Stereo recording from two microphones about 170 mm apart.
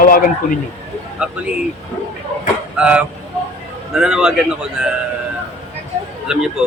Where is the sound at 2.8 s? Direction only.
5° right (ahead or behind).